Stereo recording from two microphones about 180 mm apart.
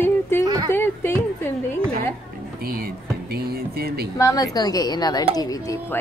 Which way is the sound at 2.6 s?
55° right (ahead or behind).